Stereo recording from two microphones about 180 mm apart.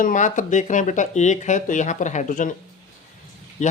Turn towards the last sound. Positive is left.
turn(degrees=40)  # may be behind; listen again after turning